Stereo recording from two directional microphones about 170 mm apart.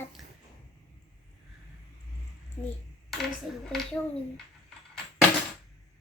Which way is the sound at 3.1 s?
Centre (ahead or behind).